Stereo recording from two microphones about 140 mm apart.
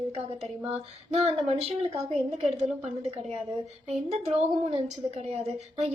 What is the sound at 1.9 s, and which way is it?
Speech, 50° right (ahead or behind).